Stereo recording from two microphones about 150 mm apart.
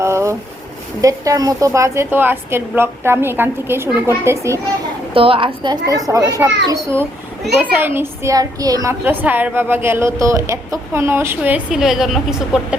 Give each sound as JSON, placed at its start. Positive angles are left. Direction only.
{"t": 0.0, "sound": "vehicle", "side_deg": -20}
{"t": 1.0, "sound": "a woman's voice", "side_deg": -20}
{"t": 5.1, "sound": "a woman's voice", "side_deg": -35}